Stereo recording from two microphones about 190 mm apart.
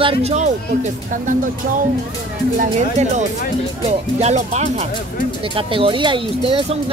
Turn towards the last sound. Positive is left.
turn(degrees=-30)  # may be behind; listen again after turning